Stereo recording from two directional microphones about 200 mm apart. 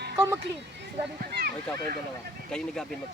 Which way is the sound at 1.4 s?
55° right (ahead or behind).